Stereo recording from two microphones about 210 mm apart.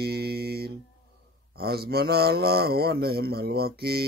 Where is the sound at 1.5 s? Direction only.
50° right (ahead or behind).